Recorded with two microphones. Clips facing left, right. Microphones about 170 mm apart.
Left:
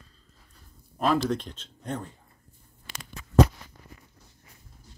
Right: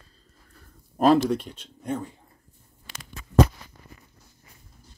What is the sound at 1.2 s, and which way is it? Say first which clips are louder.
Speech: right 3 dB; 10° right (ahead or behind).